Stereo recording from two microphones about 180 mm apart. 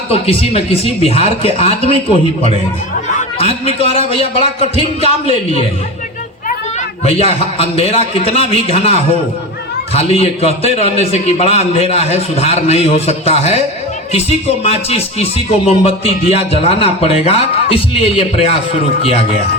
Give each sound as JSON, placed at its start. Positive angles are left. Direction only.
{"t": 0.1, "sound": "speech", "side_deg": 30}
{"t": 3.2, "sound": "speech", "side_deg": 35}
{"t": 7.0, "sound": "speech", "side_deg": 35}